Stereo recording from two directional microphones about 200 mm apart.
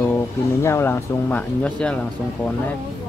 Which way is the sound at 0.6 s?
10° left (ahead or behind).